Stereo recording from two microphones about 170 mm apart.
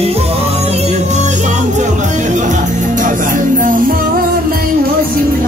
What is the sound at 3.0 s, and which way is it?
Music, 50° right (ahead or behind).